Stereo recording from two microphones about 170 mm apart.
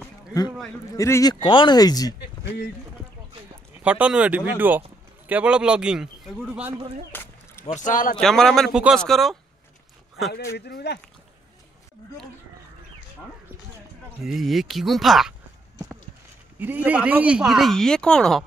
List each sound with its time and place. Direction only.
0.9 s speech: 20° left (ahead or behind)
3.8 s speech: 5° right (ahead or behind)
7.1 s a sound: 10° left (ahead or behind)
7.6 s speech: 45° left (ahead or behind)
8.2 s speech: centre (ahead or behind)
10.5 s speech: 75° left (ahead or behind)
14.2 s speech: centre (ahead or behind)
16.5 s speech: 10° right (ahead or behind)